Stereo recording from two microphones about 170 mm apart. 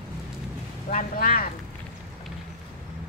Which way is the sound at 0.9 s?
55° left (ahead or behind).